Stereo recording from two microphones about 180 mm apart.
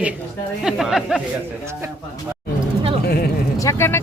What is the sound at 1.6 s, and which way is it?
Speech, 15° right (ahead or behind).